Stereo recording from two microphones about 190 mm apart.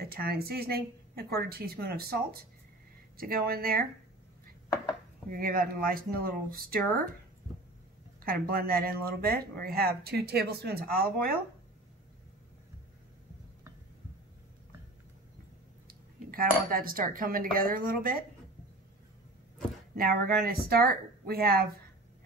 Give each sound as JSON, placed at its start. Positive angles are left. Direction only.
{"t": 0.0, "sound": "a woman's voice", "side_deg": -55}
{"t": 5.3, "sound": "speech", "side_deg": -50}
{"t": 8.2, "sound": "speech", "side_deg": -50}
{"t": 15.9, "sound": "speech", "side_deg": -50}
{"t": 20.0, "sound": "speech", "side_deg": -50}